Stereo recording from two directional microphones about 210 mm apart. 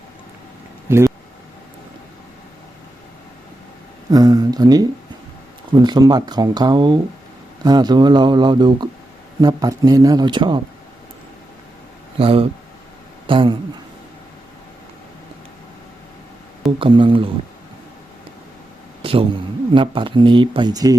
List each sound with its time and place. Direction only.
0.9 s speech: 10° right (ahead or behind)
4.1 s speech: 15° right (ahead or behind)
12.2 s speech: 25° right (ahead or behind)
16.7 s speech: 25° right (ahead or behind)
19.0 s a man's voice: 25° right (ahead or behind)